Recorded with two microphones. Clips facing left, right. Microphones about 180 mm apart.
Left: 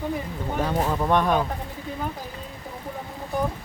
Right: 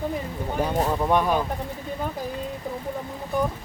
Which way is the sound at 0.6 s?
10° right (ahead or behind).